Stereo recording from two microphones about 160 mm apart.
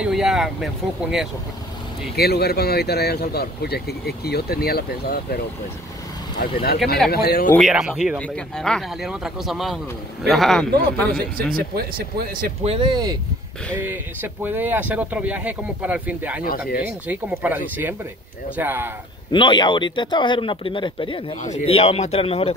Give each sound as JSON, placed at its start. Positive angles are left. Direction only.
{"t": 0.0, "sound": "speech", "side_deg": 0}
{"t": 2.1, "sound": "speech", "side_deg": 80}
{"t": 6.4, "sound": "speech", "side_deg": 70}
{"t": 7.6, "sound": "speech", "side_deg": -5}
{"t": 11.5, "sound": "speech", "side_deg": -75}
{"t": 12.6, "sound": "speech", "side_deg": -30}
{"t": 13.8, "sound": "speech", "side_deg": -10}
{"t": 16.4, "sound": "speech", "side_deg": 70}
{"t": 17.1, "sound": "speech", "side_deg": -10}
{"t": 18.6, "sound": "speech", "side_deg": -15}
{"t": 19.3, "sound": "speech", "side_deg": 30}
{"t": 21.4, "sound": "speech", "side_deg": 45}